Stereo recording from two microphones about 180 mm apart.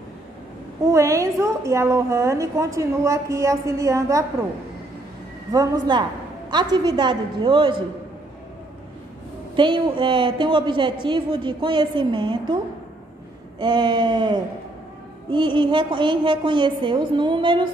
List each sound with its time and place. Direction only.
0.9 s a woman's voice: 15° right (ahead or behind)
5.5 s a woman's voice: 20° right (ahead or behind)
9.6 s a woman's voice: 25° right (ahead or behind)
13.6 s a woman's voice: 25° right (ahead or behind)